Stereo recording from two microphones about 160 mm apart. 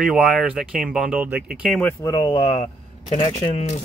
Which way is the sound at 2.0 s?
20° left (ahead or behind).